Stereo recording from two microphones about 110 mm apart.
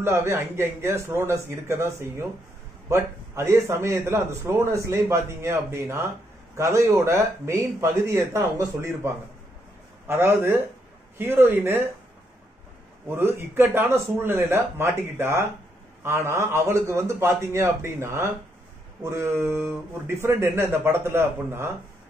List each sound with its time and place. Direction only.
0.0 s a man's voice: 25° right (ahead or behind)
13.1 s a man's voice: 20° right (ahead or behind)